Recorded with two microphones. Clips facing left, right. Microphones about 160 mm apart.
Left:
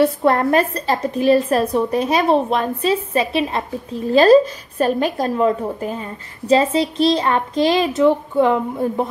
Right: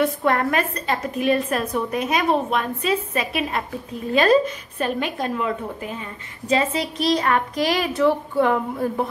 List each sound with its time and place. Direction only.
0.0 s a woman's voice: 35° left (ahead or behind)